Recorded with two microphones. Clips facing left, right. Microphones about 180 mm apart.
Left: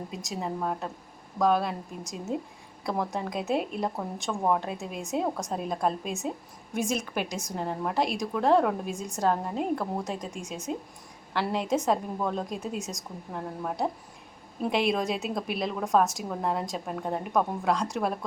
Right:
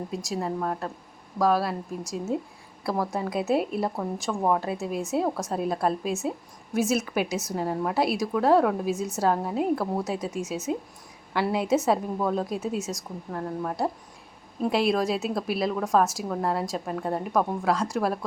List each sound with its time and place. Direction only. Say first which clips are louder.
0.1 s a woman's voice: right 4 dB; centre (ahead or behind)